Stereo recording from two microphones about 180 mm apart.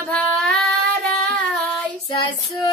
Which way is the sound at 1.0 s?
5° left (ahead or behind).